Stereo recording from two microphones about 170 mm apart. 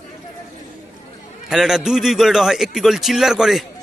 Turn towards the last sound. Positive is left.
turn(degrees=0)  # may be behind; listen again after turning